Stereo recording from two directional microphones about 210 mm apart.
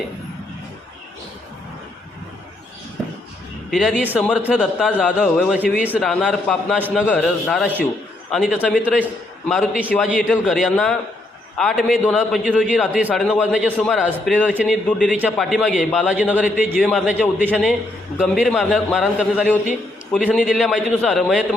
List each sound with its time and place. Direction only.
3.7 s a man's voice: centre (ahead or behind)